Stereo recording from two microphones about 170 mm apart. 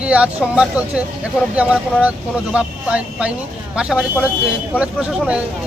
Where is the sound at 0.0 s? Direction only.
5° right (ahead or behind).